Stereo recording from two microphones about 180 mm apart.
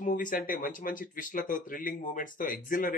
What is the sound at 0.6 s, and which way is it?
Speech, 45° left (ahead or behind).